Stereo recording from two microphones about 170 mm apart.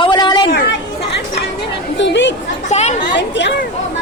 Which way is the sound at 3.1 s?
90° left.